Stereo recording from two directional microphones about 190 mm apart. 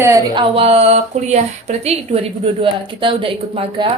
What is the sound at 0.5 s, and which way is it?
Speech, 30° right (ahead or behind).